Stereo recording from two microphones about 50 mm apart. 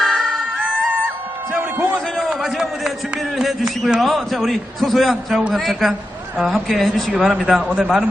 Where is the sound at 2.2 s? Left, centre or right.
Centre.